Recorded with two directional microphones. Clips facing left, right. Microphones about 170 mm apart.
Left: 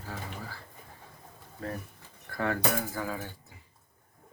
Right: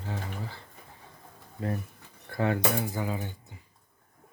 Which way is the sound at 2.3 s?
20° right (ahead or behind).